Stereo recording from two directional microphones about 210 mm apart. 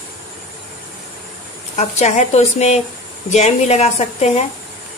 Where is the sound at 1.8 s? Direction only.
35° left (ahead or behind).